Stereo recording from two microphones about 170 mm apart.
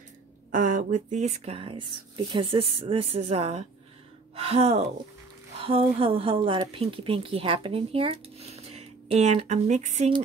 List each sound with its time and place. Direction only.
0.5 s speech: 50° right (ahead or behind)